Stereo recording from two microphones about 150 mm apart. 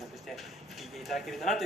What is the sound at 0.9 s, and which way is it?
Speech, centre (ahead or behind).